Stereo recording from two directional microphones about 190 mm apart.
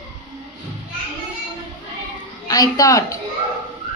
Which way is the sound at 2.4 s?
20° left (ahead or behind).